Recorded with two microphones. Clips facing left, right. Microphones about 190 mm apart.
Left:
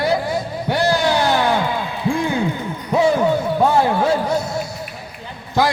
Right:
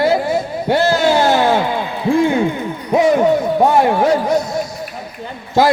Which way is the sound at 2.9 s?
20° right (ahead or behind).